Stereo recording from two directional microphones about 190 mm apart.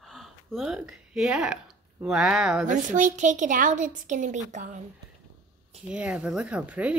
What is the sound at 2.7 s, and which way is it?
A woman's voice, 40° right (ahead or behind).